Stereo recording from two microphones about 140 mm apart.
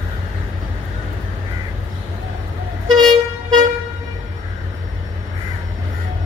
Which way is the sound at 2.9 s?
30° right (ahead or behind).